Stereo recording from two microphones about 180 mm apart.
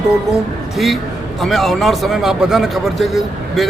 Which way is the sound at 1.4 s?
Centre (ahead or behind).